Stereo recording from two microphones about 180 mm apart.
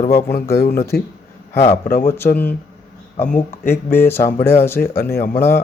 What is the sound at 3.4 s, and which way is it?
Speech, 10° left (ahead or behind).